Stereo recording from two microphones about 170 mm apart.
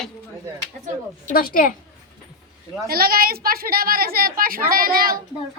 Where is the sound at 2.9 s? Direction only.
60° right (ahead or behind).